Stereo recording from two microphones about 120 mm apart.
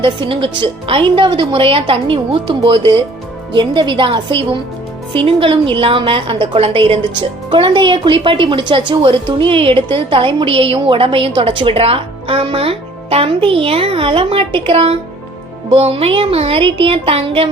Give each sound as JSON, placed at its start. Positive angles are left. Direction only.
{"t": 0.0, "sound": "a woman's voice", "side_deg": -45}